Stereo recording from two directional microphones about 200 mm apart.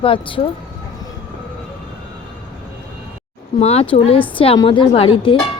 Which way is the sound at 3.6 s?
30° left (ahead or behind).